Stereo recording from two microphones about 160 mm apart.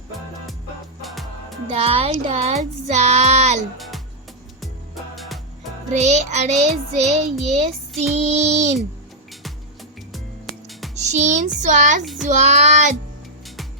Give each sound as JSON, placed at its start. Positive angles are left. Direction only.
{"t": 1.0, "sound": "music", "side_deg": 0}
{"t": 1.7, "sound": "speech", "side_deg": -40}
{"t": 2.9, "sound": "child singing", "side_deg": -45}
{"t": 3.8, "sound": "music", "side_deg": 0}
{"t": 5.1, "sound": "music", "side_deg": 0}
{"t": 5.9, "sound": "child singing", "side_deg": -45}
{"t": 10.7, "sound": "music", "side_deg": 0}
{"t": 10.9, "sound": "child singing", "side_deg": -45}
{"t": 12.0, "sound": "child singing", "side_deg": 0}
{"t": 12.3, "sound": "child singing", "side_deg": -45}